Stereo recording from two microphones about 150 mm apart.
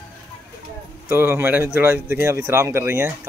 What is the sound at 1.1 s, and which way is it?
A man's voice, 15° right (ahead or behind).